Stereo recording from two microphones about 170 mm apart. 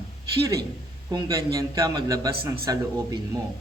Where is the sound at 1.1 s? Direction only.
20° right (ahead or behind).